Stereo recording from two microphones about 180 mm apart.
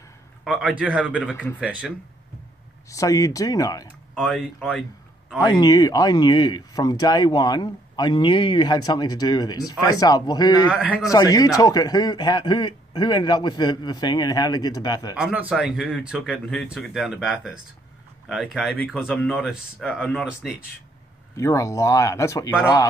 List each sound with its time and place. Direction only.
0.5 s speech: 5° right (ahead or behind)
2.9 s speech: 20° left (ahead or behind)
4.1 s speech: centre (ahead or behind)
5.4 s speech: 20° left (ahead or behind)
10.7 s speech: 5° right (ahead or behind)
11.1 s speech: 20° left (ahead or behind)
15.1 s speech: 5° right (ahead or behind)
21.4 s speech: 15° left (ahead or behind)